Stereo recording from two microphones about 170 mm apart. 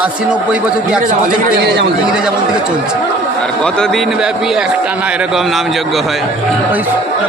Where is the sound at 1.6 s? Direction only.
75° right (ahead or behind).